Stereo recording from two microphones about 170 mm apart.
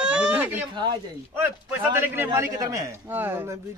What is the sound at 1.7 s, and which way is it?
A man's voice, 10° right (ahead or behind).